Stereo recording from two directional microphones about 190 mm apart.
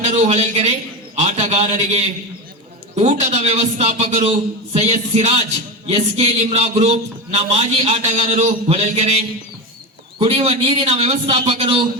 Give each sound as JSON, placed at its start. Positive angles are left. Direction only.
{"t": 0.0, "sound": "a man's voice", "side_deg": -35}